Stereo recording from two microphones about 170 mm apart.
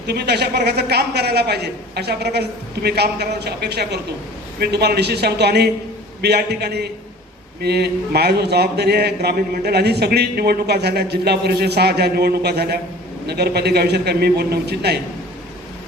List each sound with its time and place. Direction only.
0.0 s a man's voice: 75° right (ahead or behind)